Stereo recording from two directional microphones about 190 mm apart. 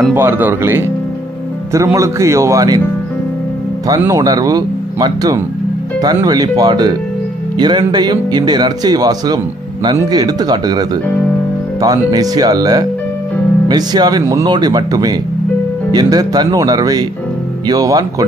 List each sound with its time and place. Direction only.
0.1 s speech: 10° right (ahead or behind)
3.8 s speech: 20° right (ahead or behind)